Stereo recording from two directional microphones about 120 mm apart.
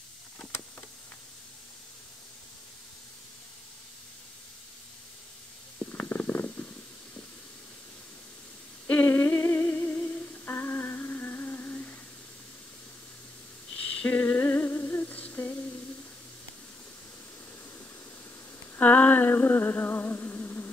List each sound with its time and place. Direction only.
5.8 s stomach rumble: 15° left (ahead or behind)
8.8 s humming: 15° left (ahead or behind)
13.9 s humming: 15° left (ahead or behind)
18.8 s a sound: 10° left (ahead or behind)